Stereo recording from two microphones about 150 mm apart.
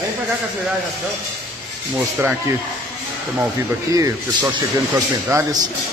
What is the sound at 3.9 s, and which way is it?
Speech, 20° right (ahead or behind).